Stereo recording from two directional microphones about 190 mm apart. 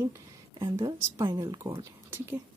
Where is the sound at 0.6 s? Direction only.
20° right (ahead or behind).